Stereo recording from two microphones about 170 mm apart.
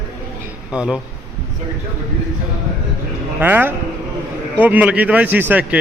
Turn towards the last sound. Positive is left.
turn(degrees=-10)  # may be behind; listen again after turning